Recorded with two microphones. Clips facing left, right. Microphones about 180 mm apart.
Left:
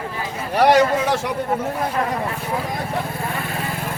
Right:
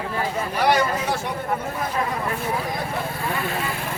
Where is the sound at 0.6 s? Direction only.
90° left.